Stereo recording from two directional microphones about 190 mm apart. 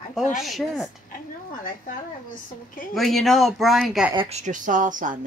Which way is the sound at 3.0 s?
Centre (ahead or behind).